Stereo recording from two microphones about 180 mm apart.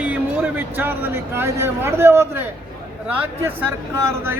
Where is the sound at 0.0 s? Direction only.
10° right (ahead or behind).